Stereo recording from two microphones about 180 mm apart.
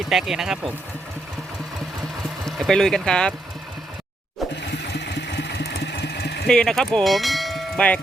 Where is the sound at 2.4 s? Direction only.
Centre (ahead or behind).